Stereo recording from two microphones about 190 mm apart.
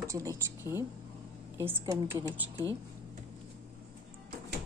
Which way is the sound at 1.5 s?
10° right (ahead or behind).